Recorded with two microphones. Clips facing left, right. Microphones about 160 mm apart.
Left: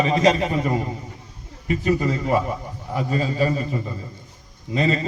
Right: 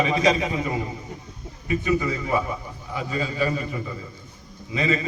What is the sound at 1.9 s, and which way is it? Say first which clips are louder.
A man's voice: left 3 dB; 50° left (ahead or behind).